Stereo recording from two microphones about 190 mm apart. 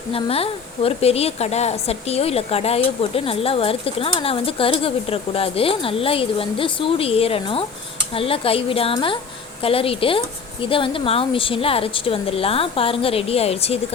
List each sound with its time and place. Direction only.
0.1 s a woman's voice: 30° left (ahead or behind)